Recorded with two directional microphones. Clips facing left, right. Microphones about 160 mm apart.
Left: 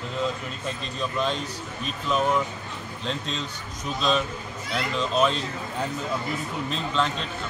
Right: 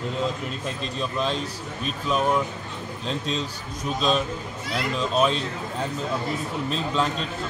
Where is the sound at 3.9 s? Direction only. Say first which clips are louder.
Right 1 dB; centre (ahead or behind).